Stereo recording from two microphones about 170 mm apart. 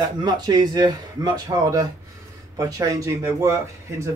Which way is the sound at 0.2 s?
25° right (ahead or behind).